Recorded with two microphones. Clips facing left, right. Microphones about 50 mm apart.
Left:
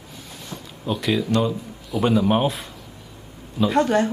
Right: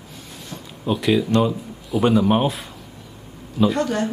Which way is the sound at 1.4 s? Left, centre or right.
Centre.